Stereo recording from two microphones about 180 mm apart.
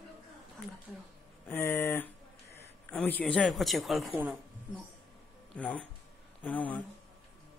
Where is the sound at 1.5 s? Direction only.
10° left (ahead or behind).